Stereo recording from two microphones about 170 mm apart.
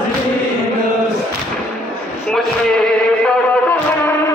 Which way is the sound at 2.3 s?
5° left (ahead or behind).